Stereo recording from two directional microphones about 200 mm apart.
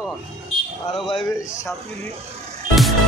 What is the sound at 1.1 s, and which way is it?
Speech, 25° left (ahead or behind).